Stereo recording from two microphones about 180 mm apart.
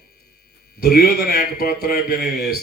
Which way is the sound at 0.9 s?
55° left (ahead or behind).